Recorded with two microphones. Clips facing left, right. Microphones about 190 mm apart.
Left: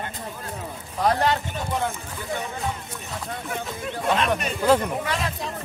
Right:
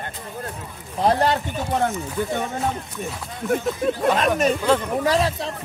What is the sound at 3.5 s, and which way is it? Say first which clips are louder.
Speech: right 12 dB; 45° right (ahead or behind).